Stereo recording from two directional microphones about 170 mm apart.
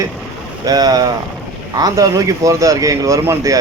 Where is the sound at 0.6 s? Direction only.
25° right (ahead or behind).